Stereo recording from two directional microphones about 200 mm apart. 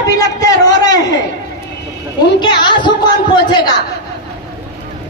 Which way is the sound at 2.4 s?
20° left (ahead or behind).